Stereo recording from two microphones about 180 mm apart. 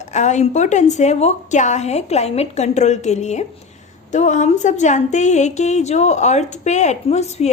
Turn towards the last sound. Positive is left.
turn(degrees=40)  # may be behind; listen again after turning